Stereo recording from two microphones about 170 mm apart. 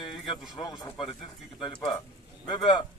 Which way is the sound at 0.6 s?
25° left (ahead or behind).